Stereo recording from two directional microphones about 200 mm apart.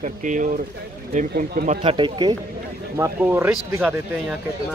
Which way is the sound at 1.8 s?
25° right (ahead or behind).